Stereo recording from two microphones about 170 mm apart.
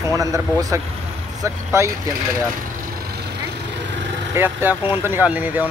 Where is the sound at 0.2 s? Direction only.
20° right (ahead or behind).